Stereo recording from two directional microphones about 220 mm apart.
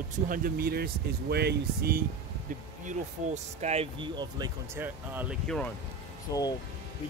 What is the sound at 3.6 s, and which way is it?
Speech, 25° right (ahead or behind).